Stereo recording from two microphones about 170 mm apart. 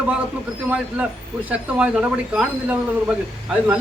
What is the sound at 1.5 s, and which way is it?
Speech, 10° right (ahead or behind).